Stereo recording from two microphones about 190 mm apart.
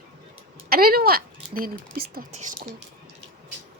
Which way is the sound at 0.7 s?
50° right (ahead or behind).